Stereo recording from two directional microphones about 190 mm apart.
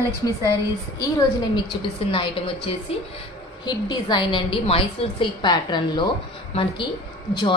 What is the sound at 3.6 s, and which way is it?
A woman's voice, 25° left (ahead or behind).